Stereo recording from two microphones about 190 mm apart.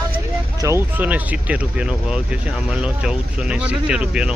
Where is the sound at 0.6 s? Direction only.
15° right (ahead or behind).